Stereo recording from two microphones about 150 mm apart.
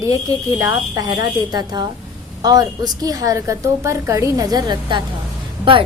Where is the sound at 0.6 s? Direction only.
20° right (ahead or behind).